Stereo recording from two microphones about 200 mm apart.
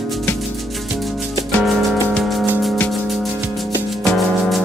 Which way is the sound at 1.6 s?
Centre (ahead or behind).